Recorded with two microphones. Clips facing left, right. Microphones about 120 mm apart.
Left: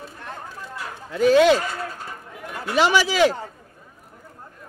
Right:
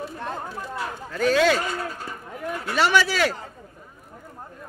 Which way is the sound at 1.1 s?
15° left (ahead or behind).